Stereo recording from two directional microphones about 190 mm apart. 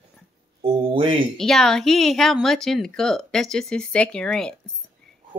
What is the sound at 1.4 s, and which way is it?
A woman's voice, centre (ahead or behind).